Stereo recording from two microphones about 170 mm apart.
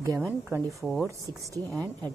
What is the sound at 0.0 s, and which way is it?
Speech, 15° right (ahead or behind).